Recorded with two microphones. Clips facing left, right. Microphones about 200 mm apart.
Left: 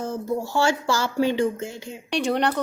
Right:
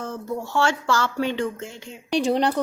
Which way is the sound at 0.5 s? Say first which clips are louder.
Right 1 dB; 5° left (ahead or behind).